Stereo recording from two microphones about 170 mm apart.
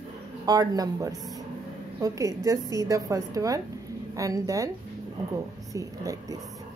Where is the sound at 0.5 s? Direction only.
20° right (ahead or behind).